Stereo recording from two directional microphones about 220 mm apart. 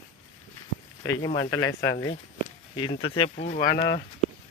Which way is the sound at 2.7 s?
20° left (ahead or behind).